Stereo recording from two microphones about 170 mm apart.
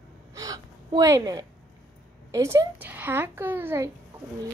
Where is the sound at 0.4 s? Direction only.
20° right (ahead or behind).